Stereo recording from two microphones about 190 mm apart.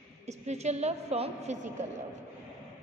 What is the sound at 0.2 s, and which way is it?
A woman's voice, 35° right (ahead or behind).